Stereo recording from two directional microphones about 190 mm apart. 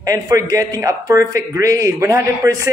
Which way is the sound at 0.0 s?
15° right (ahead or behind).